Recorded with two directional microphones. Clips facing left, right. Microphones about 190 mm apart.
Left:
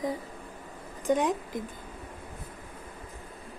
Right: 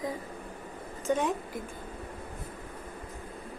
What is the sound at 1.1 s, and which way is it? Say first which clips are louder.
Speech: left 3 dB; 15° left (ahead or behind).